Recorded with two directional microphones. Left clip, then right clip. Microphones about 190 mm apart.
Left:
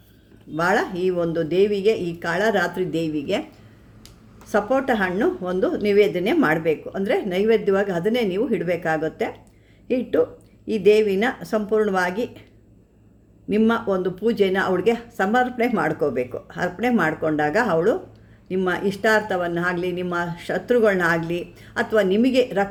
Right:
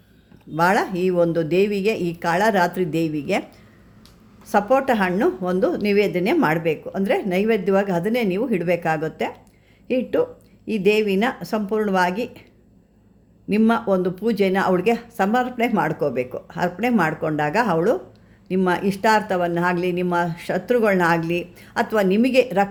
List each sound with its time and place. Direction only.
0.5 s a woman's voice: 30° right (ahead or behind)
4.4 s a woman's voice: 30° right (ahead or behind)
13.5 s a woman's voice: 25° right (ahead or behind)